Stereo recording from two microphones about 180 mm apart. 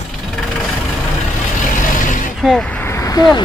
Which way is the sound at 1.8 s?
45° left (ahead or behind).